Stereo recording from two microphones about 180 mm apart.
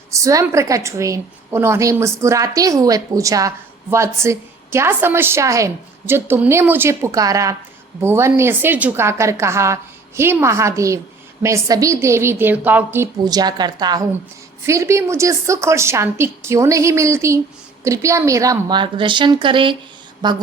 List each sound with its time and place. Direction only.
0.1 s a woman's voice: 20° right (ahead or behind)